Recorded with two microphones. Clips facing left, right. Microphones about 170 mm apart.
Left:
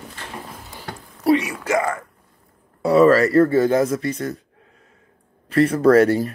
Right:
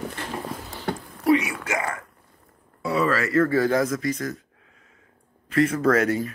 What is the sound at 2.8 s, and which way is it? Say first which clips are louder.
Speech: left 10 dB; 40° left (ahead or behind).